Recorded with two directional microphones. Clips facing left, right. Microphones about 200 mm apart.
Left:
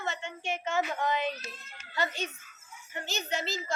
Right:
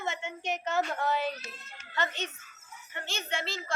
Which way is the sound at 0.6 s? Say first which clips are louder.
Even; 10° left (ahead or behind).